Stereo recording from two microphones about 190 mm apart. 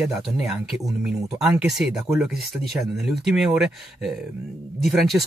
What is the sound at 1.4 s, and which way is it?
Speech, 5° right (ahead or behind).